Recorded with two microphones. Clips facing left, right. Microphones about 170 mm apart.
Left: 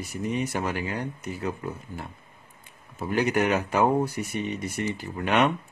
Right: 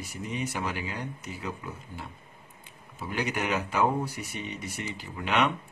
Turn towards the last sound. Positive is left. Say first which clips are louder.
# left 4 dB
turn(degrees=50)  # may be behind; listen again after turning